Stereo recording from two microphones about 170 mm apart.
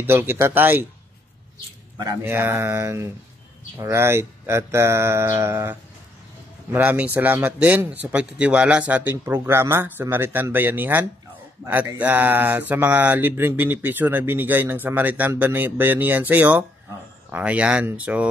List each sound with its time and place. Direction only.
0.0 s speech: 15° right (ahead or behind)
2.0 s speech: 15° right (ahead or behind)